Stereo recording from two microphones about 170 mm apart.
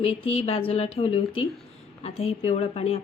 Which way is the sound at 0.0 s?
35° left (ahead or behind).